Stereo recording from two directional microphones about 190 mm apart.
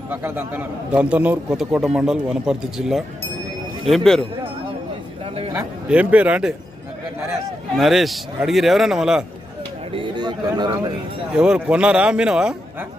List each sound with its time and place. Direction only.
0.1 s a man's voice: 10° right (ahead or behind)
5.5 s a man's voice: 5° right (ahead or behind)
7.7 s a man's voice: centre (ahead or behind)
9.9 s speech: 25° right (ahead or behind)
11.3 s a man's voice: 5° right (ahead or behind)